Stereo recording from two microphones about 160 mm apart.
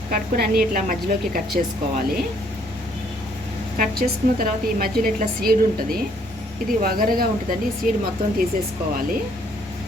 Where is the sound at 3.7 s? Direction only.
65° right (ahead or behind).